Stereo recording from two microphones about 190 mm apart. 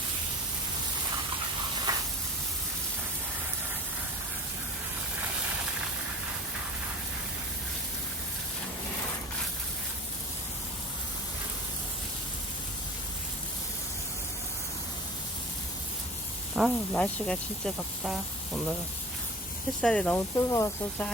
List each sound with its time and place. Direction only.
1.9 s a sound: 20° right (ahead or behind)
16.6 s speech: 5° left (ahead or behind)
19.8 s speech: 5° left (ahead or behind)